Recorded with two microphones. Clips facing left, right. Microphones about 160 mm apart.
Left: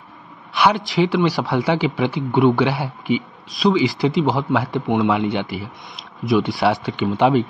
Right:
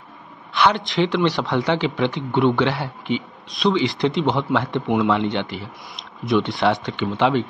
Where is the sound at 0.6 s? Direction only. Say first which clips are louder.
Left 1 dB; 5° left (ahead or behind).